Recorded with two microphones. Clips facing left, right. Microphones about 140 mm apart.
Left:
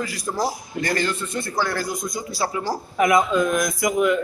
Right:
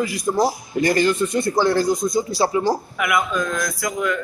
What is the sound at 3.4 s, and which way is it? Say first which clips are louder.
Speech: left 3 dB; 20° left (ahead or behind).